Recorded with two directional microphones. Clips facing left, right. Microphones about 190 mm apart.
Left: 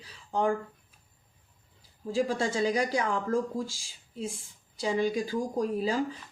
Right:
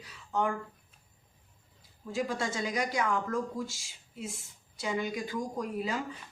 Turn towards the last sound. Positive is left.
turn(degrees=30)  # may be behind; listen again after turning